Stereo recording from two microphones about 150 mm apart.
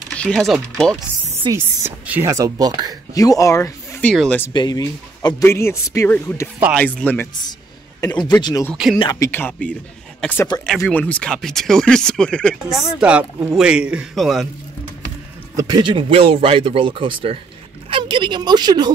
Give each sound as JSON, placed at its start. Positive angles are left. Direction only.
{"t": 0.2, "sound": "speech", "side_deg": 5}
{"t": 1.5, "sound": "speech", "side_deg": -15}
{"t": 3.2, "sound": "speech", "side_deg": 25}
{"t": 4.0, "sound": "speech", "side_deg": 5}
{"t": 4.6, "sound": "a man's voice", "side_deg": 25}
{"t": 6.7, "sound": "speech", "side_deg": 10}
{"t": 8.4, "sound": "a man's voice", "side_deg": 30}
{"t": 15.5, "sound": "speech", "side_deg": -30}